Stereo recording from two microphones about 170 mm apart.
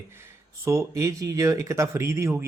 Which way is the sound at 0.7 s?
15° right (ahead or behind).